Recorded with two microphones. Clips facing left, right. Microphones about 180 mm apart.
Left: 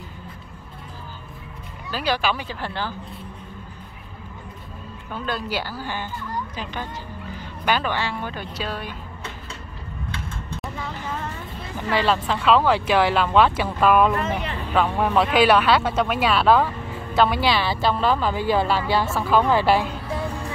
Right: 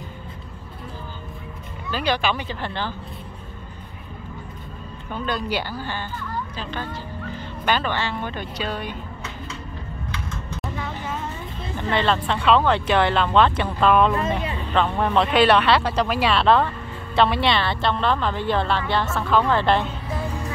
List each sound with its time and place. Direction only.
1.9 s speech: 5° left (ahead or behind)
5.1 s speech: 5° left (ahead or behind)
10.1 s typing: 30° left (ahead or behind)
11.7 s speech: 5° left (ahead or behind)